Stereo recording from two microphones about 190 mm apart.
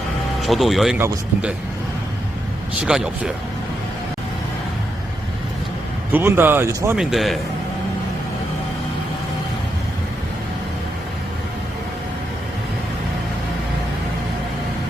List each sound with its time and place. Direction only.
0.4 s speech: centre (ahead or behind)
2.8 s speech: 5° right (ahead or behind)
6.1 s a man's voice: 10° right (ahead or behind)